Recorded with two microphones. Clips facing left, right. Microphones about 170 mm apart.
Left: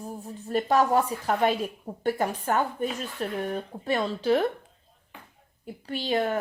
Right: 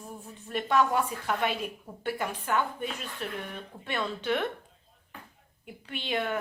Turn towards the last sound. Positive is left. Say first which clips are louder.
# left 5 dB
turn(degrees=35)  # may be behind; listen again after turning